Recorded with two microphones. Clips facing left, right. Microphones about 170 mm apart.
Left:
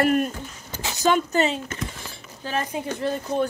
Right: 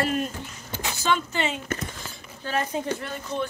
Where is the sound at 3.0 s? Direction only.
35° left (ahead or behind).